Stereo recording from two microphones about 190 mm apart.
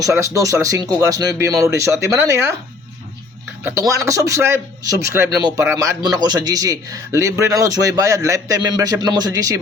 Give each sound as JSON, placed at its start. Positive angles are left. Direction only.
{"t": 0.0, "sound": "a man's voice", "side_deg": -15}
{"t": 3.6, "sound": "a man's voice", "side_deg": -15}